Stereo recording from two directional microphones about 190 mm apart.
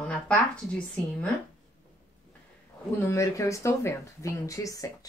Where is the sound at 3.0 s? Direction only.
15° left (ahead or behind).